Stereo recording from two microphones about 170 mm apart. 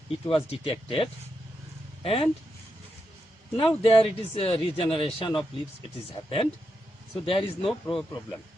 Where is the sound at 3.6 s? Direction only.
30° left (ahead or behind).